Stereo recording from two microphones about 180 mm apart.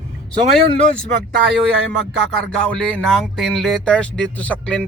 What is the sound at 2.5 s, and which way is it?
Speech, 5° left (ahead or behind).